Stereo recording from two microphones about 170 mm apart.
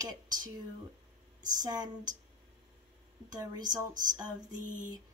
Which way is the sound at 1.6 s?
25° right (ahead or behind).